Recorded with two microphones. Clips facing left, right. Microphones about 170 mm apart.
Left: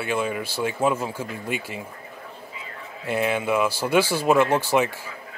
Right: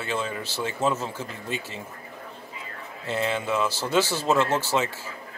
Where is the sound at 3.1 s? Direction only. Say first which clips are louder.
Left 3 dB; 15° left (ahead or behind).